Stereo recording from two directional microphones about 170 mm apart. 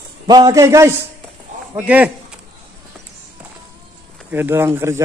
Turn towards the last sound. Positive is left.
turn(degrees=-15)  # may be behind; listen again after turning